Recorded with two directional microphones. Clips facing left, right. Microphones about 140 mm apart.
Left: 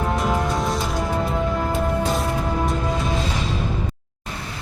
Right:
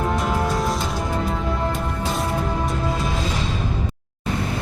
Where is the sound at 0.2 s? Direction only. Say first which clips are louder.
Even; centre (ahead or behind).